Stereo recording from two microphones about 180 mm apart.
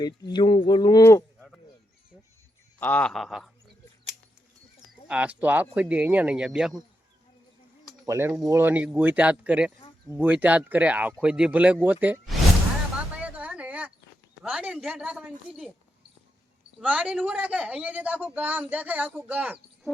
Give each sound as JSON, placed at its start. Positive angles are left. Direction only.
{"t": 0.3, "sound": "speech", "side_deg": 25}
{"t": 2.8, "sound": "a woman's voice", "side_deg": 10}
{"t": 5.0, "sound": "speech", "side_deg": -10}
{"t": 8.0, "sound": "speech", "side_deg": -15}
{"t": 13.0, "sound": "a sound", "side_deg": -5}
{"t": 14.4, "sound": "a woman's voice", "side_deg": -5}
{"t": 16.8, "sound": "speech", "side_deg": -5}